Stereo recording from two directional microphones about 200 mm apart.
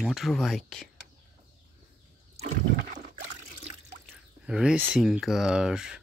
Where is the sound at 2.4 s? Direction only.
35° right (ahead or behind).